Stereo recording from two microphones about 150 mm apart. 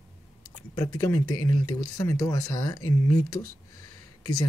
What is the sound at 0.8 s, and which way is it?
Speech, 20° left (ahead or behind).